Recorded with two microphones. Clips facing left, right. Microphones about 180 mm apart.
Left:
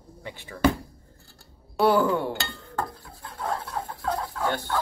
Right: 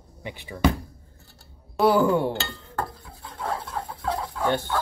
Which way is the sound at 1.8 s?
10° right (ahead or behind).